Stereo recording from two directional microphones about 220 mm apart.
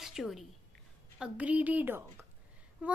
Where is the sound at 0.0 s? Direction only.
Centre (ahead or behind).